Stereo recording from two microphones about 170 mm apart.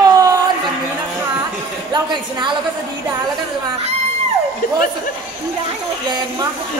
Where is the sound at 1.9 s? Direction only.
25° right (ahead or behind).